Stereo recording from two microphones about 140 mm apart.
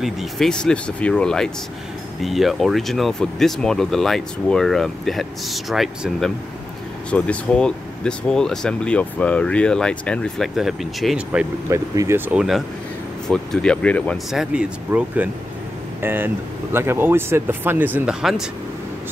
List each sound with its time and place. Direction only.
0.0 s speech: centre (ahead or behind)
11.7 s speech: 20° right (ahead or behind)
12.3 s speech: 5° right (ahead or behind)
14.3 s speech: 5° right (ahead or behind)